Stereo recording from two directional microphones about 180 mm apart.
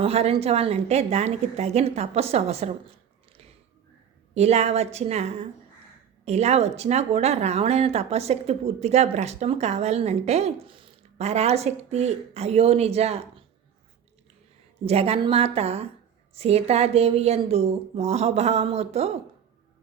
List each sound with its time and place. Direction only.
0.0 s speech: 35° right (ahead or behind)
4.4 s speech: 35° right (ahead or behind)
14.8 s speech: 35° right (ahead or behind)